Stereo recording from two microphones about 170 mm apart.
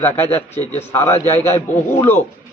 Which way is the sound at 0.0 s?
10° left (ahead or behind).